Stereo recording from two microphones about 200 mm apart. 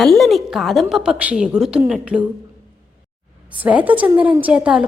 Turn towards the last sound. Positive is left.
turn(degrees=-5)  # may be behind; listen again after turning